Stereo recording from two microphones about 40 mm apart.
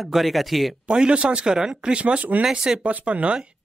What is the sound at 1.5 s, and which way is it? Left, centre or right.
Speech, centre.